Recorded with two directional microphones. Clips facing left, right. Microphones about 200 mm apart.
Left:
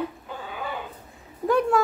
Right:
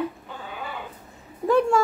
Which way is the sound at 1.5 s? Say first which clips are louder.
Right 2 dB; centre (ahead or behind).